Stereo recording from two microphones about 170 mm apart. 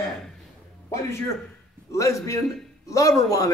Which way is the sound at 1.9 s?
20° left (ahead or behind).